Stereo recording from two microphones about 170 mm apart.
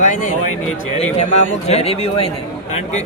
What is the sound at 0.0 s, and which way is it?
A woman's voice, 45° left (ahead or behind).